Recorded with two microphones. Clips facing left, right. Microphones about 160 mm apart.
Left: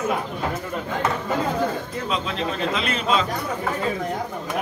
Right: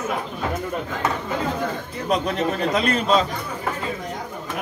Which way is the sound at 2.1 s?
45° right (ahead or behind).